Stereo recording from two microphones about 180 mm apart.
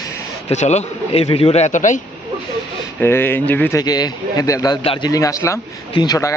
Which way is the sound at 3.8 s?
20° left (ahead or behind).